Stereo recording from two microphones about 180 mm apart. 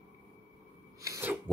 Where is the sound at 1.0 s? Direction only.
15° right (ahead or behind).